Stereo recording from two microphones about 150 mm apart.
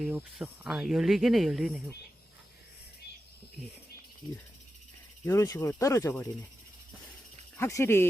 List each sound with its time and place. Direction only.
0.0 s speech: 5° right (ahead or behind)
5.2 s speech: 20° left (ahead or behind)
7.5 s speech: 15° left (ahead or behind)